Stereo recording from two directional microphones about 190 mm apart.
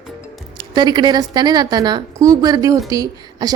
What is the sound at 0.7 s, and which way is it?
A woman's voice, 25° right (ahead or behind).